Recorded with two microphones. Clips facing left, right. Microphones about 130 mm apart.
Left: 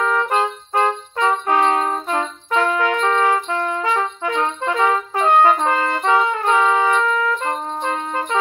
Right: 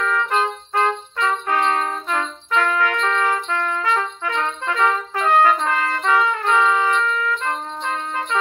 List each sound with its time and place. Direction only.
0.0 s music: 25° left (ahead or behind)